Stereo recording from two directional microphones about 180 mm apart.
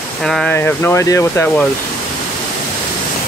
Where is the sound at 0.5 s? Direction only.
10° left (ahead or behind).